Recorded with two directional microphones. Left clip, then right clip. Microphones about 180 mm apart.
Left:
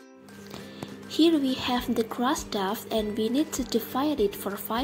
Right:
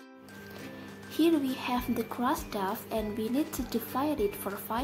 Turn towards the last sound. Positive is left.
turn(degrees=20)  # may be behind; listen again after turning